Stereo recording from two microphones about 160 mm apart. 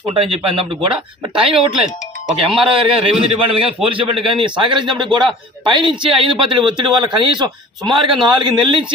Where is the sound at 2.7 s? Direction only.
35° right (ahead or behind).